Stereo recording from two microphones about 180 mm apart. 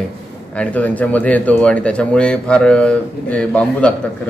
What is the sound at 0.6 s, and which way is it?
Speech, 10° left (ahead or behind).